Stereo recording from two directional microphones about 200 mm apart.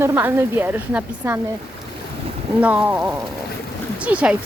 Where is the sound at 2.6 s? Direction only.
5° right (ahead or behind).